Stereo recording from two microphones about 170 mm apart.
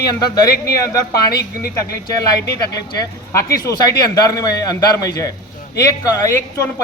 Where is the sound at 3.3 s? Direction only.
15° left (ahead or behind).